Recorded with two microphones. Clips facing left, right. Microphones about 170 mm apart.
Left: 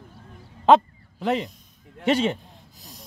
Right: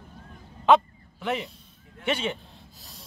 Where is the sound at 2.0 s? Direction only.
35° left (ahead or behind).